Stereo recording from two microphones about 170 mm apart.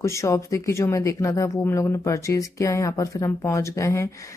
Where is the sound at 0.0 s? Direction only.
15° left (ahead or behind).